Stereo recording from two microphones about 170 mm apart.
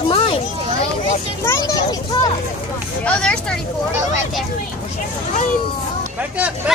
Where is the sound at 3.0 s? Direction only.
5° left (ahead or behind).